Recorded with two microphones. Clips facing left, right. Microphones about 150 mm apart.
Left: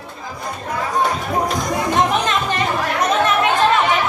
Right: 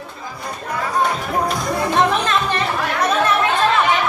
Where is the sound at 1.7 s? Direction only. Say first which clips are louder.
Right 1 dB; 20° left (ahead or behind).